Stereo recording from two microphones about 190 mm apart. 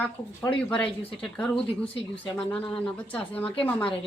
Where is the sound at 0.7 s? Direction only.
5° left (ahead or behind).